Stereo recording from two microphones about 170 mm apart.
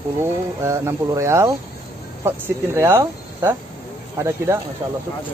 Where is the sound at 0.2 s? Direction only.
15° right (ahead or behind).